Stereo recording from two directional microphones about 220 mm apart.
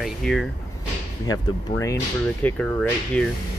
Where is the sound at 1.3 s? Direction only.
15° left (ahead or behind).